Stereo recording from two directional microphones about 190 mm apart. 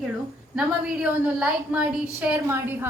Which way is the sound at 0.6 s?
5° right (ahead or behind).